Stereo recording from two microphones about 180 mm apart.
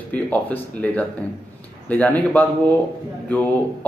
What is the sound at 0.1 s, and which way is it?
A man's voice, 10° left (ahead or behind).